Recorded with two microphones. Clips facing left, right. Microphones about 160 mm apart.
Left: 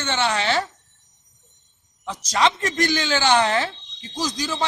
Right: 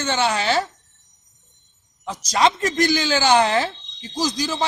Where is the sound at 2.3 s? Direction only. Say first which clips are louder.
Right 2 dB; 10° right (ahead or behind).